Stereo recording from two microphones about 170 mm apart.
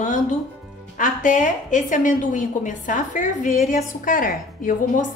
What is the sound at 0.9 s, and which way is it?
A woman's voice, 50° left (ahead or behind).